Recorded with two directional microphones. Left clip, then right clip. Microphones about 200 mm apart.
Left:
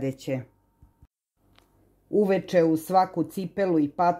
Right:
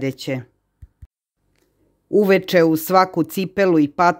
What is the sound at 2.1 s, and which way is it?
Speech, 30° right (ahead or behind).